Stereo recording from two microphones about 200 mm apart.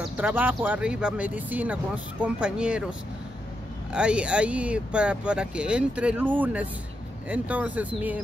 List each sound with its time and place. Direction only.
0.2 s speech: 10° right (ahead or behind)